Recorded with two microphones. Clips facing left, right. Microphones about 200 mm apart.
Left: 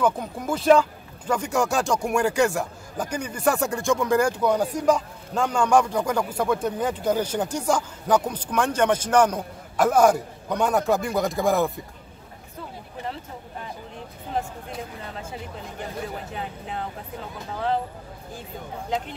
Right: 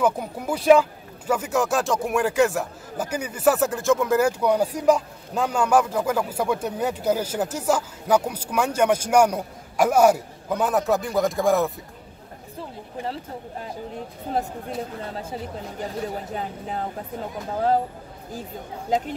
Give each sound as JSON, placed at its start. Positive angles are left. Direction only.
{"t": 0.0, "sound": "speech", "side_deg": -10}
{"t": 14.3, "sound": "speech", "side_deg": -40}